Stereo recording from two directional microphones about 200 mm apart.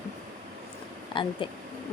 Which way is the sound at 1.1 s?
25° left (ahead or behind).